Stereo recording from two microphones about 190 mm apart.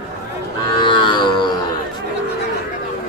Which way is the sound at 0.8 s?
25° left (ahead or behind).